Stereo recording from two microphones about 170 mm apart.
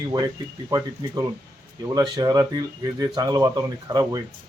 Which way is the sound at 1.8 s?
25° right (ahead or behind).